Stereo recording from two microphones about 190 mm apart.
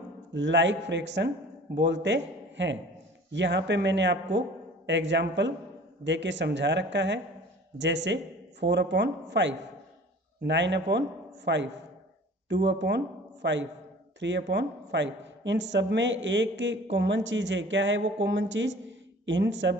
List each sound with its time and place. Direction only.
0.3 s a man's voice: 70° right (ahead or behind)